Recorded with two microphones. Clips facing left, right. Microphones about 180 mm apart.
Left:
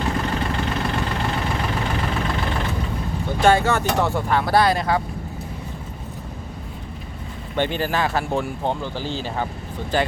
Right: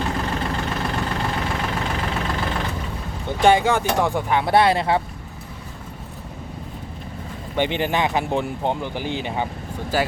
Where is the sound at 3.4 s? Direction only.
15° right (ahead or behind).